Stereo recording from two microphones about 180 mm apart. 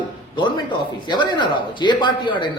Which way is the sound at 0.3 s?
25° left (ahead or behind).